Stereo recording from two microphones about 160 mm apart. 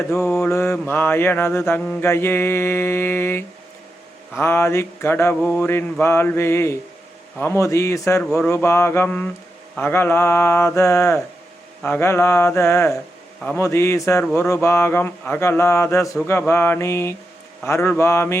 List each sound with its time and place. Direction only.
0.1 s a man's voice: 15° left (ahead or behind)